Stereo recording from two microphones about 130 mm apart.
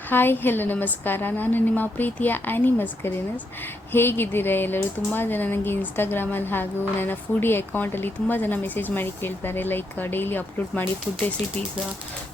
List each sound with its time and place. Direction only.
0.1 s speech: 15° left (ahead or behind)